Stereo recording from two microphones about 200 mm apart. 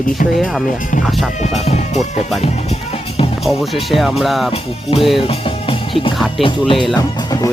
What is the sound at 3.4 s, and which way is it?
Music, centre (ahead or behind).